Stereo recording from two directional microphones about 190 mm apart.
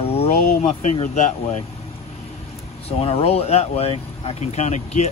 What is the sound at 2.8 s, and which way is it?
Speech, 30° left (ahead or behind).